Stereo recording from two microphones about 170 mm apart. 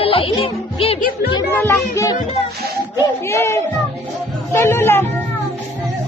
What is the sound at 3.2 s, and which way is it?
Music, 15° left (ahead or behind).